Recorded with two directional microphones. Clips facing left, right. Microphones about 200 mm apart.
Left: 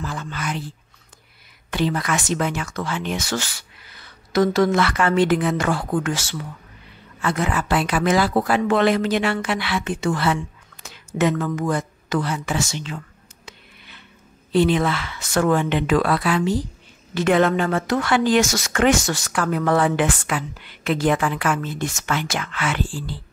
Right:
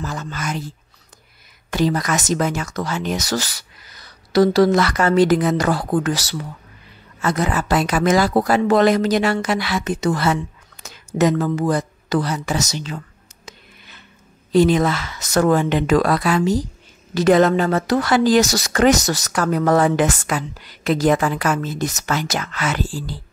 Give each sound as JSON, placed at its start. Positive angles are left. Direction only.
{"t": 0.0, "sound": "speech", "side_deg": -40}
{"t": 13.5, "sound": "a sound", "side_deg": -45}
{"t": 14.5, "sound": "speech", "side_deg": -40}